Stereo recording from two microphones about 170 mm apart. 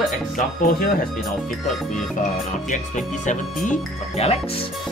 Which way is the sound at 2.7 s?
45° left (ahead or behind).